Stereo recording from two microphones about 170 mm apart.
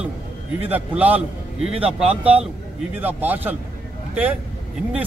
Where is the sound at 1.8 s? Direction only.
35° right (ahead or behind).